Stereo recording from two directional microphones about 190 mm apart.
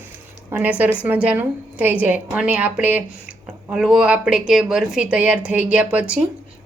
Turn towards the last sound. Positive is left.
turn(degrees=-5)  # may be behind; listen again after turning